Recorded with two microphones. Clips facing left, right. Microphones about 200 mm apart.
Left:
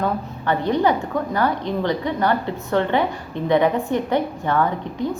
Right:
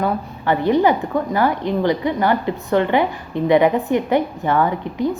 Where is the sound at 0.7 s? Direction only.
15° right (ahead or behind).